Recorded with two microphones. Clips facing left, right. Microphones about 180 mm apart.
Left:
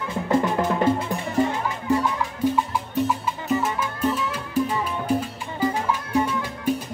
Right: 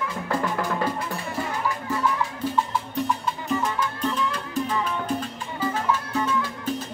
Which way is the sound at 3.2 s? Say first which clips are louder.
Left 2 dB; 5° left (ahead or behind).